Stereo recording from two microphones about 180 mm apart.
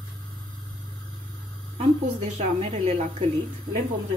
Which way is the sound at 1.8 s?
40° right (ahead or behind).